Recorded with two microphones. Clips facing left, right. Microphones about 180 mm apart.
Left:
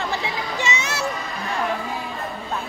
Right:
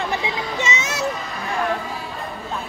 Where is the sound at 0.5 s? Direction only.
20° right (ahead or behind).